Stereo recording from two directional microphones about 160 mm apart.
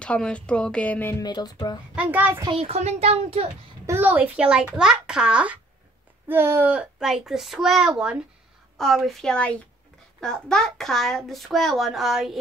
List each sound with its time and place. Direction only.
0.0 s speech: 5° left (ahead or behind)
1.2 s speech: 25° left (ahead or behind)
2.0 s a child's voice: 10° right (ahead or behind)
2.4 s a child's voice: 35° right (ahead or behind)
3.8 s a child's voice: 15° right (ahead or behind)